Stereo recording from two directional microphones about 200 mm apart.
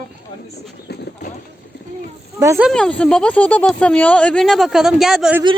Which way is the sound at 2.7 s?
5° left (ahead or behind).